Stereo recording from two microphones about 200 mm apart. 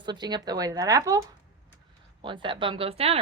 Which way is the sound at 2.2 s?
25° right (ahead or behind).